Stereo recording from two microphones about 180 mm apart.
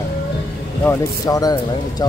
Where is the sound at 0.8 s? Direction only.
15° left (ahead or behind).